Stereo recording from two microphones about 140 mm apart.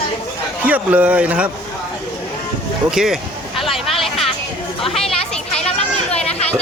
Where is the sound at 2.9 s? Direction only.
5° right (ahead or behind).